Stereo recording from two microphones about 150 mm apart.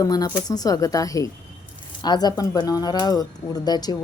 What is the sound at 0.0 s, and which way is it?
Speech, 25° left (ahead or behind).